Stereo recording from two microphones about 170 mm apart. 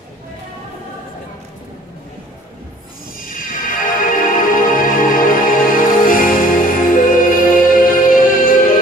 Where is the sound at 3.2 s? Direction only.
55° left (ahead or behind).